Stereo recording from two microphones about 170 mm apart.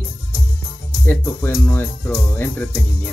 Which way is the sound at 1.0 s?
15° left (ahead or behind).